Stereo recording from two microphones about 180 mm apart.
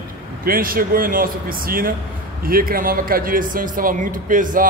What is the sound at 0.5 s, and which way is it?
A man's voice, 55° right (ahead or behind).